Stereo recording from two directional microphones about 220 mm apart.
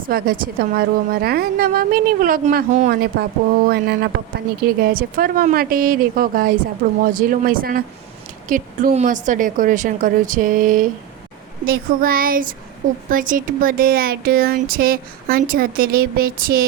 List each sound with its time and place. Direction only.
0.0 s speech: 40° right (ahead or behind)